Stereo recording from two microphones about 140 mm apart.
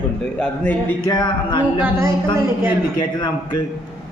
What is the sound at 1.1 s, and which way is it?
Speech, 30° left (ahead or behind).